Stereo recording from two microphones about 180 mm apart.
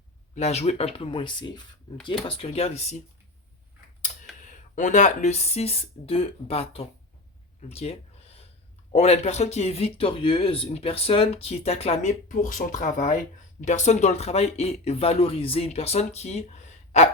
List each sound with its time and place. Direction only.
0.3 s speech: 40° left (ahead or behind)
4.4 s speech: 45° left (ahead or behind)